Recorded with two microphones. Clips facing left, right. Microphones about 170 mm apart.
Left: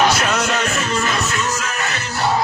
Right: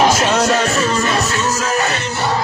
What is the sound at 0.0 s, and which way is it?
Music, 30° right (ahead or behind).